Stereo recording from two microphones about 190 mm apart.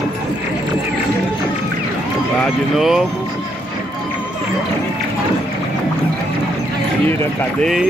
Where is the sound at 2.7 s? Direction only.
Centre (ahead or behind).